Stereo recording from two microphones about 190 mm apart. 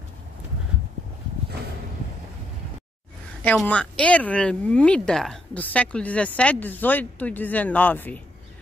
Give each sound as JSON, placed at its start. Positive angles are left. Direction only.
{"t": 3.4, "sound": "speech", "side_deg": 5}